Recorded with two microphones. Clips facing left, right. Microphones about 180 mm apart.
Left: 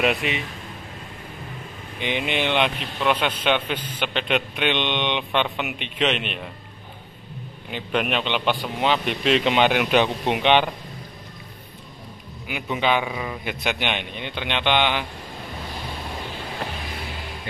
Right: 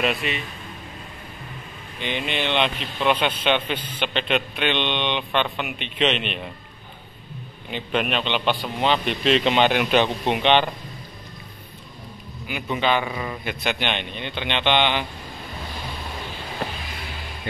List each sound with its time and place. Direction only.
0.0 s a man's voice: 15° left (ahead or behind)
2.0 s a man's voice: 15° left (ahead or behind)
7.7 s a man's voice: 10° left (ahead or behind)
12.4 s a man's voice: 10° left (ahead or behind)